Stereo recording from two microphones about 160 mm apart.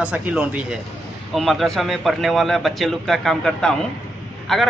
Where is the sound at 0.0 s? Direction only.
10° right (ahead or behind).